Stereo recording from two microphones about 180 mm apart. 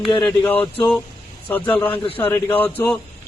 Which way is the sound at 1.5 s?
10° left (ahead or behind).